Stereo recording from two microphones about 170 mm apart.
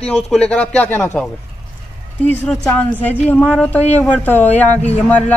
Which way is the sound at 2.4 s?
10° left (ahead or behind).